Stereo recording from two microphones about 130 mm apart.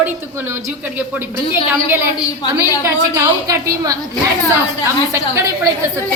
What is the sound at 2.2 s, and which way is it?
Speech, 30° left (ahead or behind).